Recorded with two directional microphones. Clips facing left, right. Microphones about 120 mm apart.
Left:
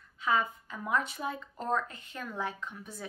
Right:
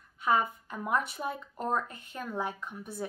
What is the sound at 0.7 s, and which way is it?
Speech, 15° right (ahead or behind).